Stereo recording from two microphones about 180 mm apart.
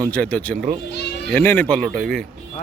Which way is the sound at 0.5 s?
50° right (ahead or behind).